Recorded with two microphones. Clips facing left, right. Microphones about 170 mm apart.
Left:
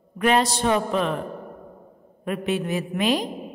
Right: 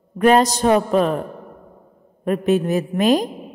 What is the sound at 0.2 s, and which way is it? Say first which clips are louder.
A woman's voice: right 6 dB; 40° right (ahead or behind).